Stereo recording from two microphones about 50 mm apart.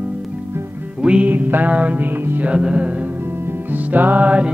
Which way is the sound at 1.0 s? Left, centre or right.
Right.